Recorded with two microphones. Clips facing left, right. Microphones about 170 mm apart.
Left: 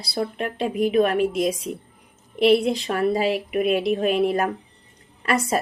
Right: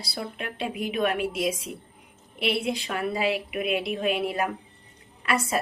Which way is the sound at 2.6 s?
40° left (ahead or behind).